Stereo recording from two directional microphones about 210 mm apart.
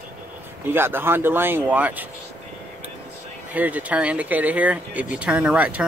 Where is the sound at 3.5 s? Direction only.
10° right (ahead or behind).